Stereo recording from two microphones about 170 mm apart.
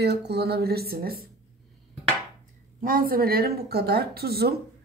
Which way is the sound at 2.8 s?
55° right (ahead or behind).